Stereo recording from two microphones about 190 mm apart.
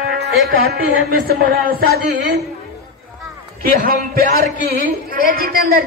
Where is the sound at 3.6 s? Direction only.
45° right (ahead or behind).